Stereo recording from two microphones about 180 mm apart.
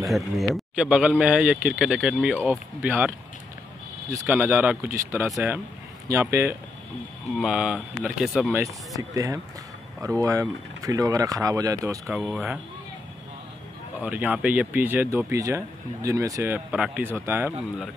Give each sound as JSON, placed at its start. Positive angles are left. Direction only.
{"t": 0.0, "sound": "a man's voice", "side_deg": 0}
{"t": 4.1, "sound": "speech", "side_deg": -10}
{"t": 7.3, "sound": "a man's voice", "side_deg": -5}
{"t": 8.5, "sound": "speech", "side_deg": -20}
{"t": 12.1, "sound": "a man's voice", "side_deg": -5}
{"t": 14.0, "sound": "speech", "side_deg": -10}
{"t": 16.5, "sound": "speech", "side_deg": -5}